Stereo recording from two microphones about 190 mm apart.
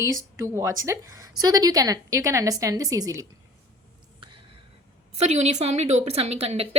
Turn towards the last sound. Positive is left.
turn(degrees=-30)  # may be behind; listen again after turning